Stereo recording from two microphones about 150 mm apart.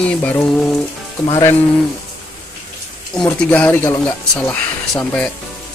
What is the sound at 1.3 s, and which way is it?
Speech, 25° left (ahead or behind).